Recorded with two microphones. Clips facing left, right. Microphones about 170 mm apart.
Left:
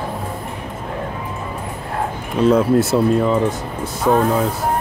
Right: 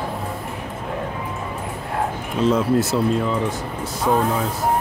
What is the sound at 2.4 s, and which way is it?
Speech, 60° left (ahead or behind).